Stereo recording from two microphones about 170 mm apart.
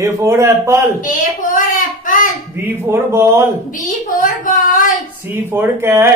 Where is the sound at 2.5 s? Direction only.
15° right (ahead or behind).